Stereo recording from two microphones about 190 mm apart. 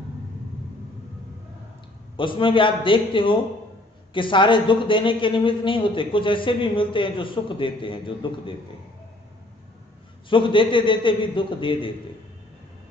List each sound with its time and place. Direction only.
2.1 s a man's voice: 25° left (ahead or behind)
10.3 s a man's voice: 25° left (ahead or behind)